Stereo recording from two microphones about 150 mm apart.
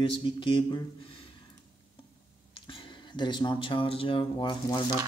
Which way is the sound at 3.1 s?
30° left (ahead or behind).